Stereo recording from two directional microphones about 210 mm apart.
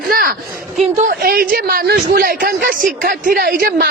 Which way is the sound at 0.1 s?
45° right (ahead or behind).